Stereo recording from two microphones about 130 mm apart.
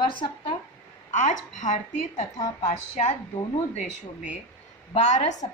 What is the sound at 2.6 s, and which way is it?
Speech, 60° left (ahead or behind).